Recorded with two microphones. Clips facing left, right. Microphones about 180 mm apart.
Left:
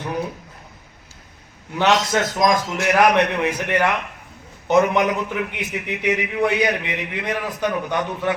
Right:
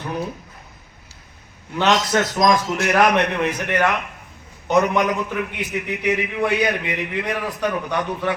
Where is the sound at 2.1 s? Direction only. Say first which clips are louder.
Right 1 dB; 15° left (ahead or behind).